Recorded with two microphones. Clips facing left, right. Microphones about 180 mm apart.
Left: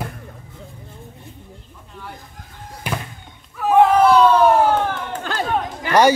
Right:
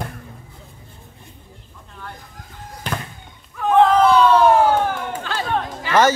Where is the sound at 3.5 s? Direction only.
5° left (ahead or behind).